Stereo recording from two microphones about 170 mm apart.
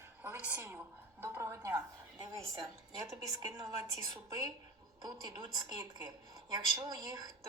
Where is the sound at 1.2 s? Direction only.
15° right (ahead or behind).